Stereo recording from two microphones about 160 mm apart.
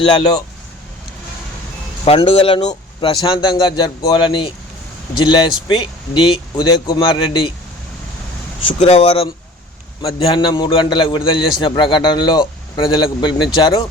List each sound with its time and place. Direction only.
0.0 s speech: 35° left (ahead or behind)
2.0 s speech: 35° left (ahead or behind)
8.6 s speech: 40° left (ahead or behind)